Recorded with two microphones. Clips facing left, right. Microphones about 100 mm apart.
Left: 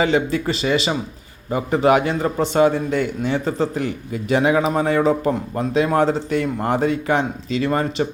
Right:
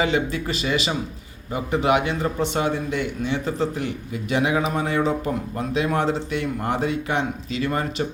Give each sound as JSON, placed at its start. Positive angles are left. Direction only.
{"t": 0.0, "sound": "a man's voice", "side_deg": 35}